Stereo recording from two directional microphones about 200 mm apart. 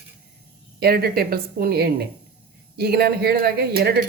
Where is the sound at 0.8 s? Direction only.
50° right (ahead or behind).